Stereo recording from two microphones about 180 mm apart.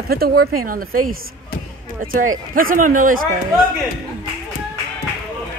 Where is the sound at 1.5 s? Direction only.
55° left (ahead or behind).